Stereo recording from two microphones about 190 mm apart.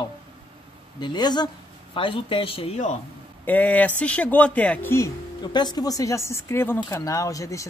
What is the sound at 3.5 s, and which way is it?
A woman's voice, 10° left (ahead or behind).